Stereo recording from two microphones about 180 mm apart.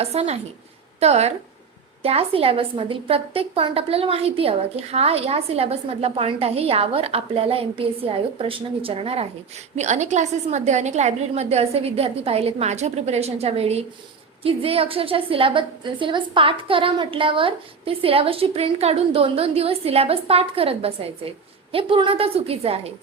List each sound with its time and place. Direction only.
0.0 s a woman's voice: 35° right (ahead or behind)